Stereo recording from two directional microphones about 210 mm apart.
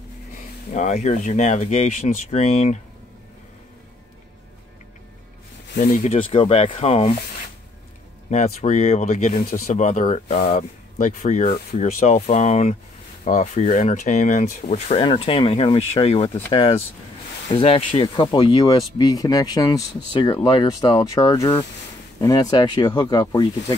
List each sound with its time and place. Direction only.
0.4 s speech: 35° left (ahead or behind)
5.8 s speech: 40° left (ahead or behind)
8.3 s speech: 35° left (ahead or behind)